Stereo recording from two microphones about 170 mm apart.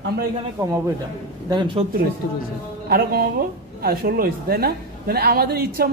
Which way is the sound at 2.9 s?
60° right (ahead or behind).